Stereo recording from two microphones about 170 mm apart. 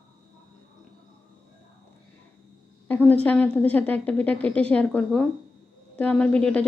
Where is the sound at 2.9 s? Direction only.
10° left (ahead or behind).